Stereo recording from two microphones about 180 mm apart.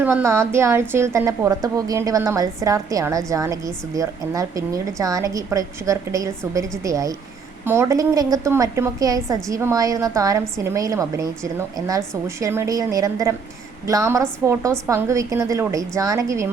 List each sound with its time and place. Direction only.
0.0 s a woman's voice: 10° right (ahead or behind)